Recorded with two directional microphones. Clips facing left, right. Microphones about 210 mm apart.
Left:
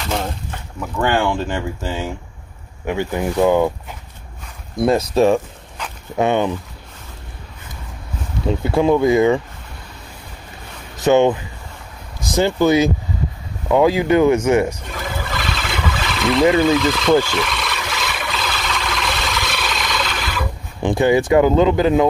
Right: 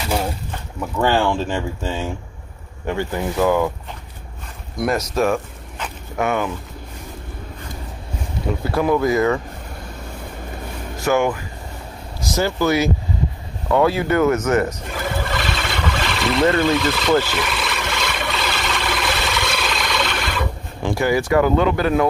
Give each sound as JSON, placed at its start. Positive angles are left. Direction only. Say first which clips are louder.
{"t": 0.1, "sound": "a sound", "louder": "right 1 dB", "side_deg": -10}
{"t": 2.9, "sound": "speech", "louder": "left 2 dB", "side_deg": 15}
{"t": 4.7, "sound": "speech", "louder": "left 5 dB", "side_deg": 30}
{"t": 8.6, "sound": "speech", "louder": "left 3 dB", "side_deg": 25}
{"t": 11.0, "sound": "speech", "louder": "left 5 dB", "side_deg": 20}
{"t": 14.9, "sound": "vehicle", "louder": "right 2 dB", "side_deg": 0}
{"t": 16.4, "sound": "speech", "louder": "left 3 dB", "side_deg": 0}
{"t": 17.2, "sound": "a sound", "louder": "left 2 dB", "side_deg": -5}
{"t": 20.8, "sound": "speech", "louder": "left 4 dB", "side_deg": 20}